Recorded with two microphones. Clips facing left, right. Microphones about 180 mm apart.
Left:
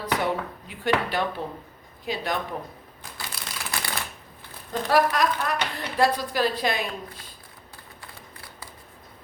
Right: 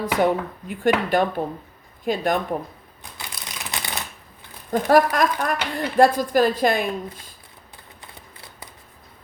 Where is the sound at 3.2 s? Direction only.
20° right (ahead or behind).